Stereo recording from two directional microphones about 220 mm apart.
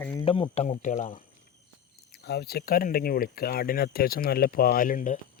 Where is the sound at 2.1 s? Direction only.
50° left (ahead or behind).